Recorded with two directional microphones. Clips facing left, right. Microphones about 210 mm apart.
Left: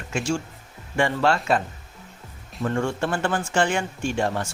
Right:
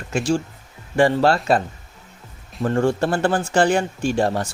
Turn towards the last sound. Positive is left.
turn(degrees=-35)  # may be behind; listen again after turning